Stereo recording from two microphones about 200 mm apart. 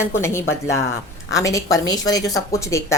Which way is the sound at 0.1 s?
15° left (ahead or behind).